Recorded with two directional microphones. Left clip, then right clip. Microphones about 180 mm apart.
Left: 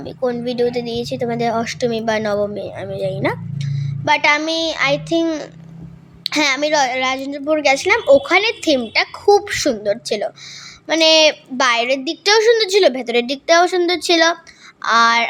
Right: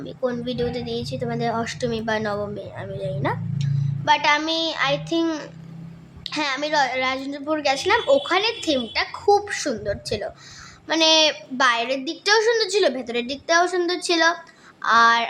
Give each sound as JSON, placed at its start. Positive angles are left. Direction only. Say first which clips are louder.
{"t": 0.0, "sound": "a child's voice", "louder": "left 5 dB", "side_deg": 30}
{"t": 6.2, "sound": "a child's voice", "louder": "left 8 dB", "side_deg": 35}